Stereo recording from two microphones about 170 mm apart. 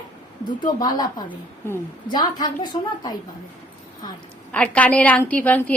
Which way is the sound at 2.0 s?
25° left (ahead or behind).